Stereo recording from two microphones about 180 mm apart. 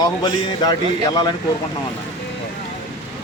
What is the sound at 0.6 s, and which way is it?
Speech, 25° left (ahead or behind).